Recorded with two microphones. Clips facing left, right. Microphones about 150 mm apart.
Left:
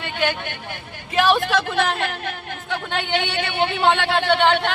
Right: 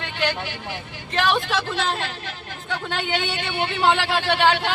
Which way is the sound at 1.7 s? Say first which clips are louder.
Left 4 dB; 60° left (ahead or behind).